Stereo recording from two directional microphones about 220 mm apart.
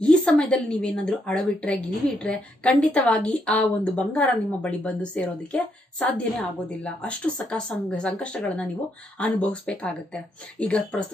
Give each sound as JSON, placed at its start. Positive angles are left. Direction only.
{"t": 0.0, "sound": "a woman's voice", "side_deg": 5}